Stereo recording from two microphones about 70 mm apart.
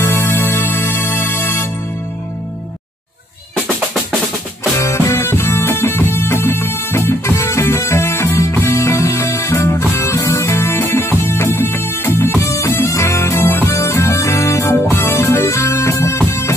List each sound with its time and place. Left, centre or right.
0.0 s music: left
4.7 s music: left